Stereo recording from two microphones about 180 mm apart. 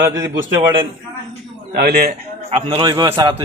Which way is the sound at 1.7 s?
60° right (ahead or behind).